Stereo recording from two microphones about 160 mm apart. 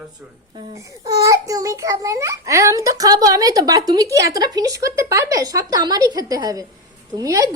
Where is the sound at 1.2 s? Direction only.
20° right (ahead or behind).